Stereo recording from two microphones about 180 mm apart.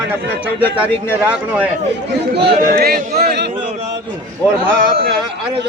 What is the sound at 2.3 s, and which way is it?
Speech, 65° right (ahead or behind).